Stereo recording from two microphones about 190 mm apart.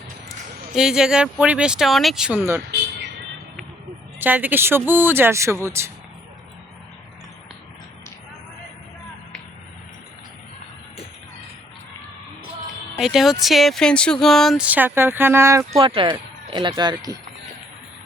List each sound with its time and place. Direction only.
0.8 s speech: 5° right (ahead or behind)
4.2 s speech: 10° right (ahead or behind)
13.0 s speech: centre (ahead or behind)
15.8 s speech: 25° right (ahead or behind)